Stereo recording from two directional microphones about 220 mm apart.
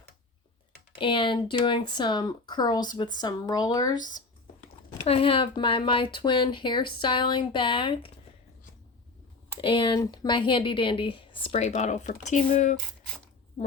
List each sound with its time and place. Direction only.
0.9 s speech: 25° left (ahead or behind)
9.6 s speech: 20° left (ahead or behind)